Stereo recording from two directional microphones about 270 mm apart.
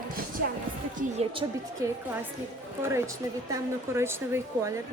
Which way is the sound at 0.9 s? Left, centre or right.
Centre.